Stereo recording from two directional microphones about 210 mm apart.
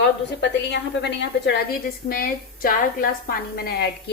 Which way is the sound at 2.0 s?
45° left (ahead or behind).